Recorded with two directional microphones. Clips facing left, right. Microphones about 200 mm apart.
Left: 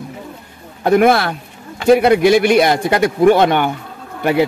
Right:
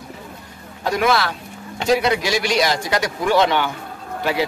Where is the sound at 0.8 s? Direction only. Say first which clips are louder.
Left 7 dB; 55° left (ahead or behind).